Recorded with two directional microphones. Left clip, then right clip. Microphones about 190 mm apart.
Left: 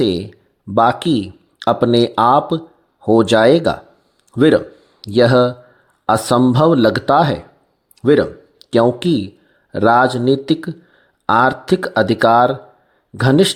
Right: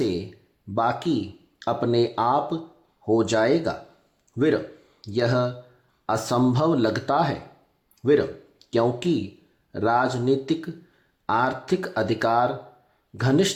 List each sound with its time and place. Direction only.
0.0 s speech: 40° left (ahead or behind)